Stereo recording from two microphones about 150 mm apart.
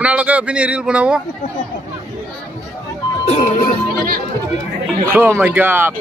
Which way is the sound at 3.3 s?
55° left (ahead or behind).